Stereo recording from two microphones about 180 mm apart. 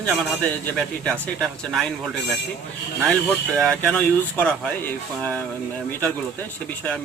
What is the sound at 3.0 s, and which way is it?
Speech, centre (ahead or behind).